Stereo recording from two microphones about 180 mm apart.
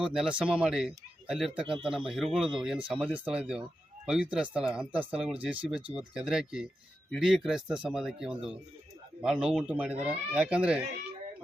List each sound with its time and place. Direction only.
0.0 s speech: 5° right (ahead or behind)